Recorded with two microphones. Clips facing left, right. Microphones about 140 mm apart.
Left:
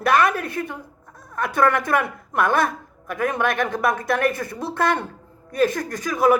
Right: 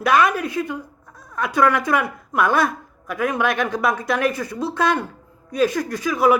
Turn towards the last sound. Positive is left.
turn(degrees=50)  # may be behind; listen again after turning